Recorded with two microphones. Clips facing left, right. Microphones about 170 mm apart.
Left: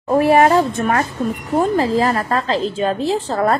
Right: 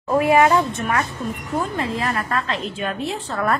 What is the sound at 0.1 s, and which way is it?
A woman's voice, 30° left (ahead or behind).